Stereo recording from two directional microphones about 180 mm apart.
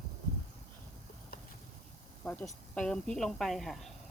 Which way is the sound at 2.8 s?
5° left (ahead or behind).